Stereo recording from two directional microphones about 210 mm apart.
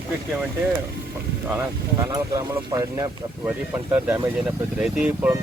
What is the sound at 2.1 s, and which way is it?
Speech, 15° right (ahead or behind).